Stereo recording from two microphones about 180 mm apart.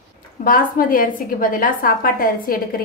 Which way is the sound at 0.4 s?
50° left (ahead or behind).